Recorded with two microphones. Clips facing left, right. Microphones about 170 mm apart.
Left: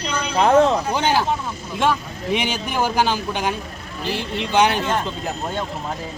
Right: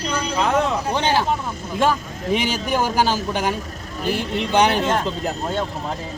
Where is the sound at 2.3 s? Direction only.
40° right (ahead or behind).